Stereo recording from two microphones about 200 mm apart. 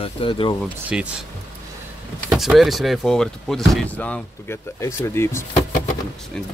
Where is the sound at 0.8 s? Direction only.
5° right (ahead or behind).